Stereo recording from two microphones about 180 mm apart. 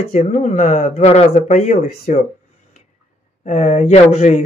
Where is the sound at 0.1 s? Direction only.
45° left (ahead or behind).